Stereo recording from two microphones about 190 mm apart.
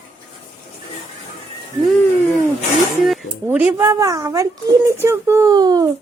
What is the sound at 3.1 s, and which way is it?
Speech, 5° right (ahead or behind).